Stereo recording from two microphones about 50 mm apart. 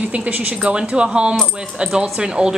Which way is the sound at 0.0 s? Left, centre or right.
Right.